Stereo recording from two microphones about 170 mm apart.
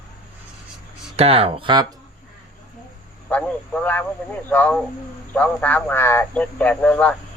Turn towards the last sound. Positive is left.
turn(degrees=5)  # may be behind; listen again after turning